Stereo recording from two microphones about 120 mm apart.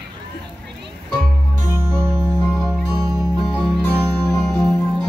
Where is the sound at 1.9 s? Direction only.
5° left (ahead or behind).